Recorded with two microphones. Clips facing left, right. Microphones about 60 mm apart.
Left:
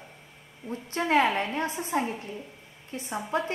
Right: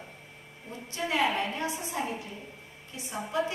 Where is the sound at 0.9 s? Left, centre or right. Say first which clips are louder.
Left 4 dB; left.